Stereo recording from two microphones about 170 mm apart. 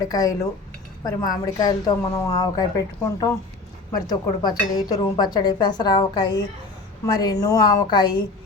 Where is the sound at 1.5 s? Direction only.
20° left (ahead or behind).